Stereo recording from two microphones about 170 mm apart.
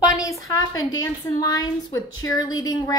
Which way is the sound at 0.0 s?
20° left (ahead or behind).